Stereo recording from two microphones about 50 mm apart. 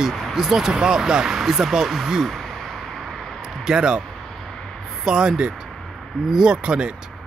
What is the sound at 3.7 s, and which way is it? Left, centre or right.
Speech, centre.